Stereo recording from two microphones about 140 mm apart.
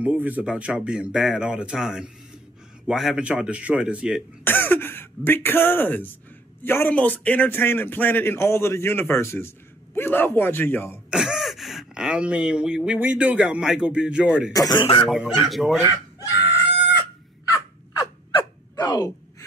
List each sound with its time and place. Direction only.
0.0 s speech: 10° right (ahead or behind)
4.5 s a man's voice: 15° left (ahead or behind)
11.1 s speech: 5° right (ahead or behind)
14.5 s speech: 30° left (ahead or behind)
15.0 s speech: 5° right (ahead or behind)
18.3 s a sound: 30° left (ahead or behind)